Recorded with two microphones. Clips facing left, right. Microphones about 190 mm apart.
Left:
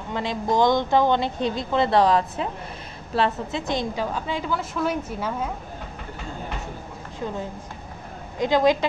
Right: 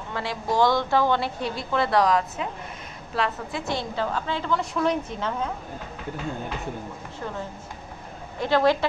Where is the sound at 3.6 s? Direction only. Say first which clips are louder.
Left 1 dB; 15° left (ahead or behind).